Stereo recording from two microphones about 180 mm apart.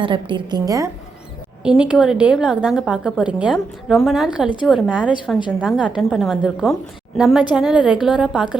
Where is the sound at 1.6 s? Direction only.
5° right (ahead or behind).